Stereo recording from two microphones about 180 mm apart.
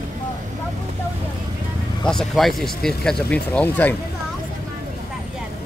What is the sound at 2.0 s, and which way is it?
Speech, centre (ahead or behind).